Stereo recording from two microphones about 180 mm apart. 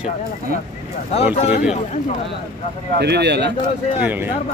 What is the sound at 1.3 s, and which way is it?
Speech, 35° left (ahead or behind).